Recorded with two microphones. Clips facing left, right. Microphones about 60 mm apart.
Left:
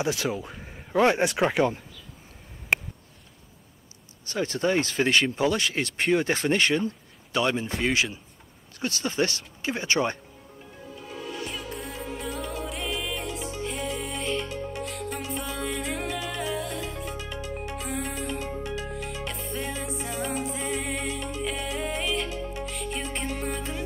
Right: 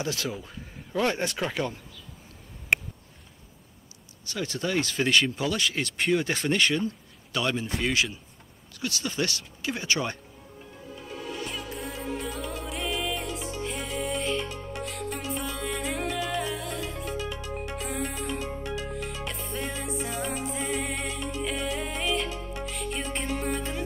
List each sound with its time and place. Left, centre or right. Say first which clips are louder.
0.0 s speech: left 4 dB; centre
0.3 s speech: left 5 dB; left
4.3 s speech: left 4 dB; left
8.7 s speech: left 3 dB; left
11.5 s music: even; centre